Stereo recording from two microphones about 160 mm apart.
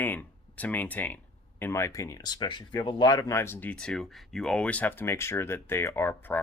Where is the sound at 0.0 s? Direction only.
10° left (ahead or behind).